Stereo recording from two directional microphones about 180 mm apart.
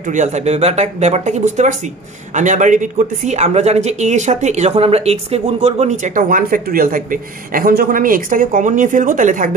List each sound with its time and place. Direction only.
0.0 s speech: 45° right (ahead or behind)